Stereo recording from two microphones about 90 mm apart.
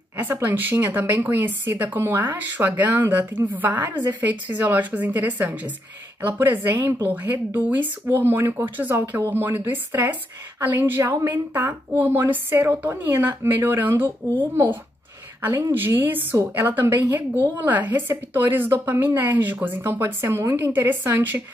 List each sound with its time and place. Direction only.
0.2 s speech: 20° right (ahead or behind)